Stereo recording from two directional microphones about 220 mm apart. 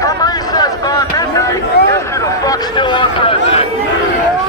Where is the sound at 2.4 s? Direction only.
20° left (ahead or behind).